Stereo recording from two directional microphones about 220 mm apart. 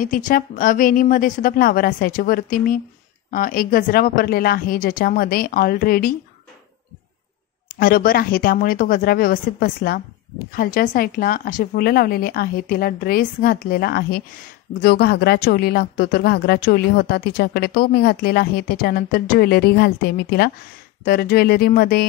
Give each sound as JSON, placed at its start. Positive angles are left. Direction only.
{"t": 0.0, "sound": "a woman's voice", "side_deg": 35}
{"t": 7.6, "sound": "a woman's voice", "side_deg": 40}